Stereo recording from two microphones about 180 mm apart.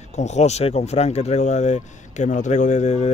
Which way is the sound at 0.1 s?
40° left (ahead or behind).